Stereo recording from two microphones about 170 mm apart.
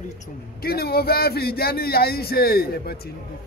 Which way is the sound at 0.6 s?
65° left (ahead or behind).